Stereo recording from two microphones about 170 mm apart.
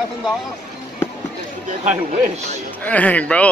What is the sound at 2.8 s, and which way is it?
Speech, 10° left (ahead or behind).